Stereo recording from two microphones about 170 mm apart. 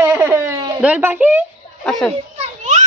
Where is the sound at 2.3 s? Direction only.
45° right (ahead or behind).